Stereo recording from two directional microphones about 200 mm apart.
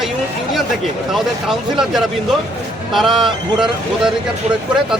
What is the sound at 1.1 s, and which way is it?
Speech, centre (ahead or behind).